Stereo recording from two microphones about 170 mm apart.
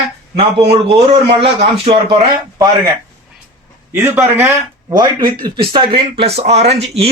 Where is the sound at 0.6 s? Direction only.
75° right (ahead or behind).